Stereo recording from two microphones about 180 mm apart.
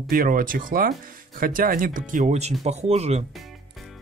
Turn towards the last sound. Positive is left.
turn(degrees=-40)  # may be behind; listen again after turning